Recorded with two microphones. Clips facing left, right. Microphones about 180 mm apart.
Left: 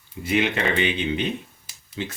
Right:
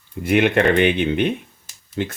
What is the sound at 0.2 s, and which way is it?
Speech, 55° right (ahead or behind).